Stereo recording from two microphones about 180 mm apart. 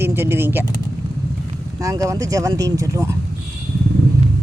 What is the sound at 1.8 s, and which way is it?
Speech, 20° right (ahead or behind).